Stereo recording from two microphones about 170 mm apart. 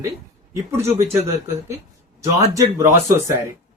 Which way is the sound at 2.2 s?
20° right (ahead or behind).